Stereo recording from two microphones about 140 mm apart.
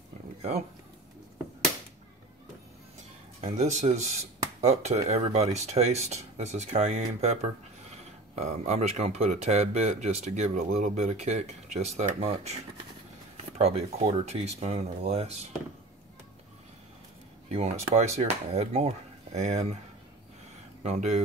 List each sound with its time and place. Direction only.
0.4 s speech: 45° right (ahead or behind)
3.3 s speech: 55° right (ahead or behind)
17.5 s speech: 50° right (ahead or behind)
20.8 s speech: 55° right (ahead or behind)